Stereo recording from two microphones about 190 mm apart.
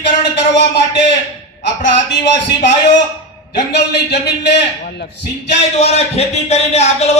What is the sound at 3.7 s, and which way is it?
A man's voice, 60° left (ahead or behind).